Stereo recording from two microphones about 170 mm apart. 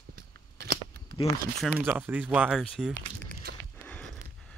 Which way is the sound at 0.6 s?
65° right (ahead or behind).